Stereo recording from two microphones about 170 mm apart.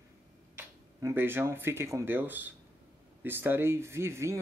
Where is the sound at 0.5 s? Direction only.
15° right (ahead or behind).